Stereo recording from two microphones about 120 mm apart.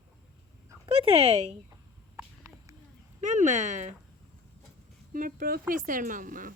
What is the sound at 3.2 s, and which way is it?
Speech, 90° right.